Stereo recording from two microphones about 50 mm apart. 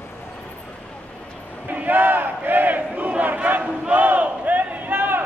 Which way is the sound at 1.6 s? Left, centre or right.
Right.